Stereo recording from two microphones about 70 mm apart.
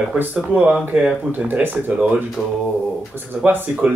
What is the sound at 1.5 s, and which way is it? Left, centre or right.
Speech, right.